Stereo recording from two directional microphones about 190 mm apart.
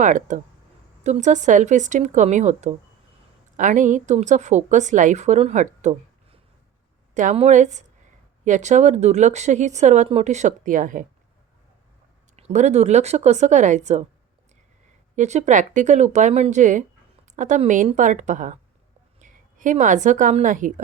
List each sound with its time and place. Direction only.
0.0 s a woman's voice: 40° right (ahead or behind)
12.4 s a woman's voice: 35° right (ahead or behind)
15.1 s a woman's voice: 40° right (ahead or behind)